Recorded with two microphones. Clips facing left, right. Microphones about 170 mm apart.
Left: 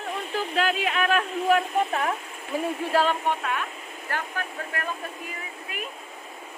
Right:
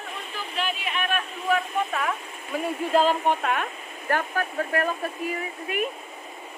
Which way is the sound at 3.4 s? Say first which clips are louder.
Right 3 dB; 50° right (ahead or behind).